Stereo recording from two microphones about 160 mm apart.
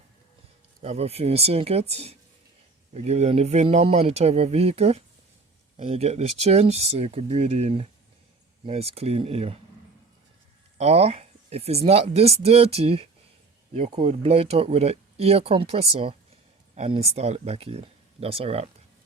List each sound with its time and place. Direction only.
0.8 s speech: 40° right (ahead or behind)
10.8 s speech: 40° right (ahead or behind)